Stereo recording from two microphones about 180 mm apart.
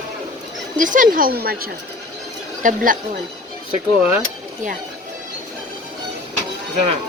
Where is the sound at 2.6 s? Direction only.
50° right (ahead or behind).